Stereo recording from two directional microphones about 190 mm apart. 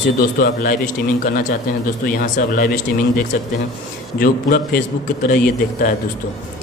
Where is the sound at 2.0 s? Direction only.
45° left (ahead or behind).